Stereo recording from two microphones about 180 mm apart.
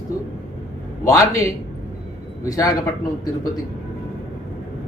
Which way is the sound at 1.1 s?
15° left (ahead or behind).